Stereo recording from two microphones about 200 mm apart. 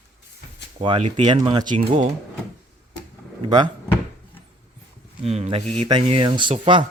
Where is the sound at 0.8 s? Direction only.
25° right (ahead or behind).